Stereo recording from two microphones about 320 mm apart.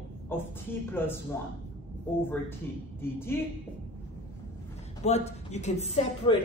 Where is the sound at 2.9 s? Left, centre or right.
Centre.